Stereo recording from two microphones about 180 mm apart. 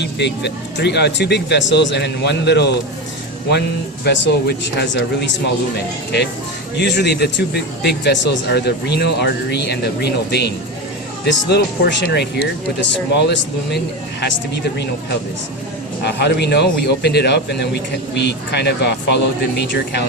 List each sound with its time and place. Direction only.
0.0 s a man's voice: 70° left (ahead or behind)
4.0 s a man's voice: 70° left (ahead or behind)
6.7 s a man's voice: 70° left (ahead or behind)
16.0 s a man's voice: 65° left (ahead or behind)